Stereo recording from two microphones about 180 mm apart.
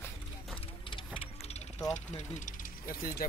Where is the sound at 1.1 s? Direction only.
35° left (ahead or behind).